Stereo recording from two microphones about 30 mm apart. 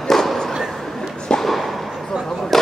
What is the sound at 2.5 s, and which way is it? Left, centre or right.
Vehicle, centre.